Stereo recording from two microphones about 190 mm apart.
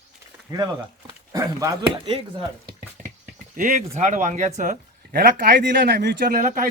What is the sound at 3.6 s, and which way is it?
Speech, 45° right (ahead or behind).